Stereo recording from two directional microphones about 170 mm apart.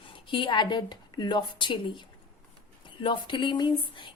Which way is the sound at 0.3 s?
30° left (ahead or behind).